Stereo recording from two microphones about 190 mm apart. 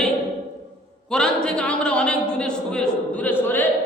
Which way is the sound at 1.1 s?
5° left (ahead or behind).